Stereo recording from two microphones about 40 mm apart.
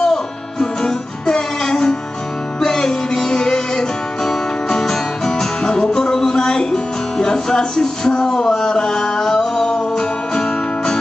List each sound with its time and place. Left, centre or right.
0.0 s music: centre